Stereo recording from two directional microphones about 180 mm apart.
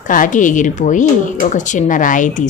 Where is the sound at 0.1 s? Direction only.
45° left (ahead or behind).